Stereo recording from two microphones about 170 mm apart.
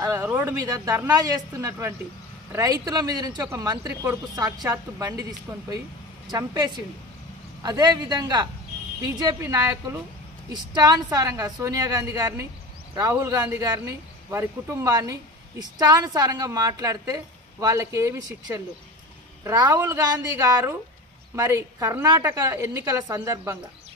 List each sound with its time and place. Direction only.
0.0 s a woman's voice: 15° right (ahead or behind)
6.3 s a woman's voice: 20° right (ahead or behind)